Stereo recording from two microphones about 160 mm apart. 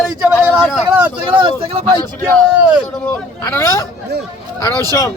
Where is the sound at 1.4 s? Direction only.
35° right (ahead or behind).